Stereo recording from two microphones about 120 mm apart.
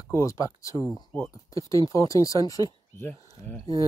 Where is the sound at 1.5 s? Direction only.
25° left (ahead or behind).